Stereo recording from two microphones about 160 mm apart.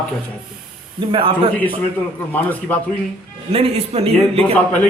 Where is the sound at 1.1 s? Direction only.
35° right (ahead or behind).